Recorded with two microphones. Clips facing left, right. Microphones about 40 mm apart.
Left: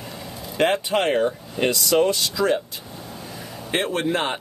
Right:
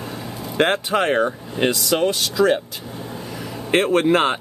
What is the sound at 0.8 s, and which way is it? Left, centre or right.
Speech, right.